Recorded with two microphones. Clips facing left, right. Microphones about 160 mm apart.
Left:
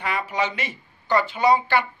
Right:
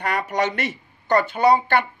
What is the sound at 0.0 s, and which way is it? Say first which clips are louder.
Speech: right 3 dB; 55° right (ahead or behind).